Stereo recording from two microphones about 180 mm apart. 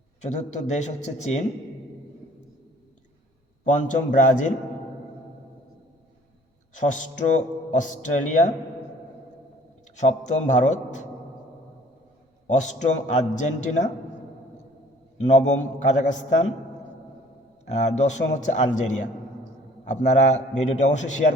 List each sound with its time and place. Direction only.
0.2 s a man's voice: 40° left (ahead or behind)
3.6 s a man's voice: 45° left (ahead or behind)
6.7 s a man's voice: 45° left (ahead or behind)
10.0 s a man's voice: 40° left (ahead or behind)
12.5 s a man's voice: 40° left (ahead or behind)
15.3 s a man's voice: 40° left (ahead or behind)
17.7 s a man's voice: 40° left (ahead or behind)
19.9 s a man's voice: 40° left (ahead or behind)